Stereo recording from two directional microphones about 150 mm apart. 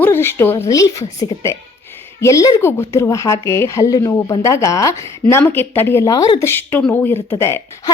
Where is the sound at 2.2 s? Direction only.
20° left (ahead or behind).